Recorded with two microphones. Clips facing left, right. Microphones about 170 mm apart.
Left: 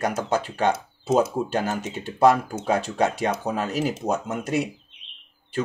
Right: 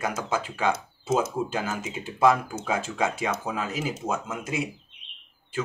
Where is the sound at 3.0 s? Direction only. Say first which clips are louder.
Left 4 dB; 40° left (ahead or behind).